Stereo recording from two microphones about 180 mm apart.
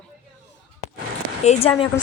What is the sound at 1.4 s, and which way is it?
Speech, 35° left (ahead or behind).